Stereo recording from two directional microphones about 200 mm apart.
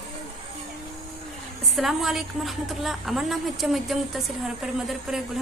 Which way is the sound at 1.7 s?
Centre (ahead or behind).